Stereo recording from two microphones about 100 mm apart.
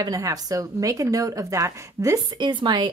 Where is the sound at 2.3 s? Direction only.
45° right (ahead or behind).